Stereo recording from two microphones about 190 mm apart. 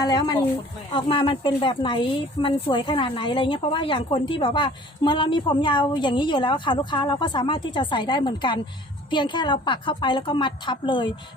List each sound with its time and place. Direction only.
0.0 s speech: 20° left (ahead or behind)